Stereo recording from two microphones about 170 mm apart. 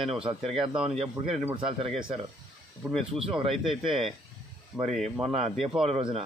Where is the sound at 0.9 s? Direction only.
35° right (ahead or behind).